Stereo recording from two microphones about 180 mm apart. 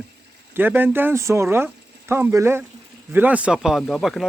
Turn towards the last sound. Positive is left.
turn(degrees=0)  # may be behind; listen again after turning